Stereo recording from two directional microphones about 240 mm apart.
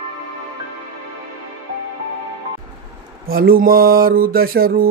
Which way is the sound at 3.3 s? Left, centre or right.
Right.